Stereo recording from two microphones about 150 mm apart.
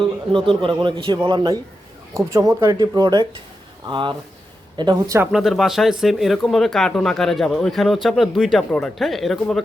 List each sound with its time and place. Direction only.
0.3 s a man's voice: 35° right (ahead or behind)
2.1 s a man's voice: 20° right (ahead or behind)
5.3 s speech: centre (ahead or behind)